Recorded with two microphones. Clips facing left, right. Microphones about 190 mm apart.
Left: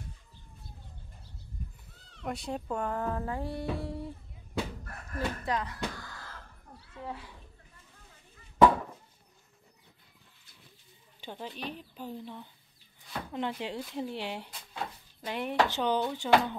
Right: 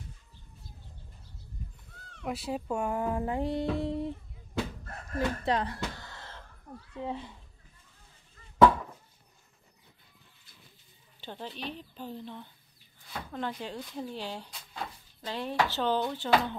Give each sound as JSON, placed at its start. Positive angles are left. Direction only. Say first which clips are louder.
{"t": 2.2, "sound": "speech", "louder": "right 2 dB", "side_deg": -5}
{"t": 3.7, "sound": "humming", "louder": "right 5 dB", "side_deg": -20}
{"t": 4.8, "sound": "a sound", "louder": "right 3 dB", "side_deg": -25}
{"t": 6.9, "sound": "speech", "louder": "right 5 dB", "side_deg": -20}
{"t": 11.1, "sound": "speech", "louder": "even", "side_deg": 10}